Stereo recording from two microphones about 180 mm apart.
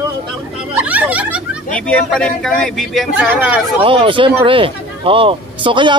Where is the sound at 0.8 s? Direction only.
10° right (ahead or behind).